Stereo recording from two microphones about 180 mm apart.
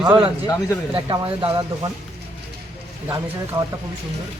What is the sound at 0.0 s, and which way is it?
Speech, 10° right (ahead or behind).